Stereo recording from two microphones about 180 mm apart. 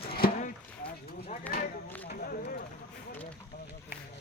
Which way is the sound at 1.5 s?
10° left (ahead or behind).